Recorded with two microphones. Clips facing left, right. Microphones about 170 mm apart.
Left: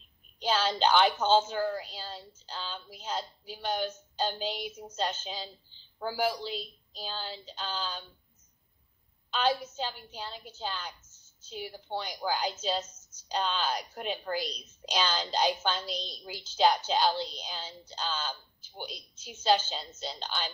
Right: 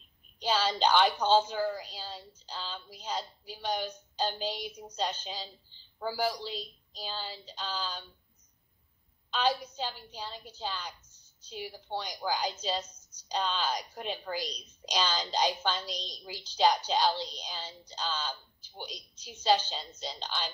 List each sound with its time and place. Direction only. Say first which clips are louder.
0.4 s a woman's voice: left 1 dB; centre (ahead or behind)
9.3 s a woman's voice: left 1 dB; 5° left (ahead or behind)
12.8 s a sound: left 1 dB; 10° right (ahead or behind)
13.3 s a woman's voice: left 1 dB; centre (ahead or behind)